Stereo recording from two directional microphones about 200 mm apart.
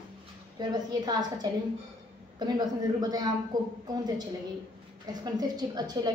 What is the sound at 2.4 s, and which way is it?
Speech, 20° right (ahead or behind).